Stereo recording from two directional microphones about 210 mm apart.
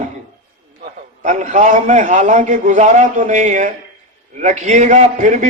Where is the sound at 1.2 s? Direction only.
35° right (ahead or behind).